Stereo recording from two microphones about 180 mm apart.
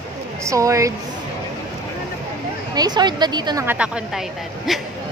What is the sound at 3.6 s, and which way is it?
A woman's voice, 10° right (ahead or behind).